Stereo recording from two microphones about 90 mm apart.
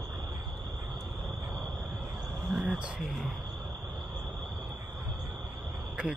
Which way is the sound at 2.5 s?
10° right (ahead or behind).